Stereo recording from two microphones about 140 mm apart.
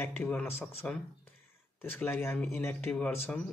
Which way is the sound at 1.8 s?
15° left (ahead or behind).